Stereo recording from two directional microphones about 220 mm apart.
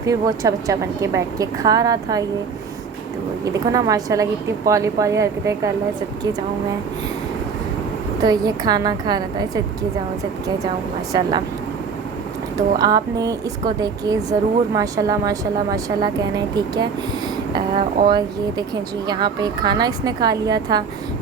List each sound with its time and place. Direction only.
0.0 s a woman's voice: 15° right (ahead or behind)
3.4 s a woman's voice: 15° right (ahead or behind)
8.2 s a woman's voice: 15° right (ahead or behind)
11.1 s speech: 20° right (ahead or behind)
12.5 s a woman's voice: 15° right (ahead or behind)